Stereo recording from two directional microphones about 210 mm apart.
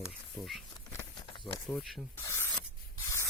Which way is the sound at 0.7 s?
20° left (ahead or behind).